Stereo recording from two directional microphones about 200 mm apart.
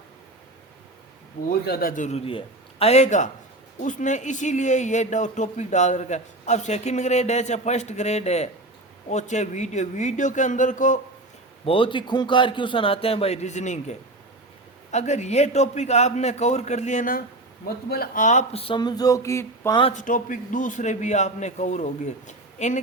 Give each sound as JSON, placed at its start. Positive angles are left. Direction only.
{"t": 1.6, "sound": "speech", "side_deg": 50}
{"t": 11.6, "sound": "a man's voice", "side_deg": 25}
{"t": 19.8, "sound": "speech", "side_deg": 35}